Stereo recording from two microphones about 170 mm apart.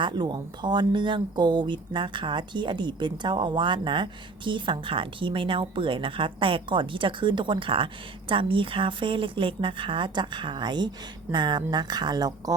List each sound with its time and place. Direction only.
0.0 s speech: 25° right (ahead or behind)